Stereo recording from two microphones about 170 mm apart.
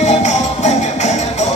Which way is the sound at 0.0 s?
45° left (ahead or behind).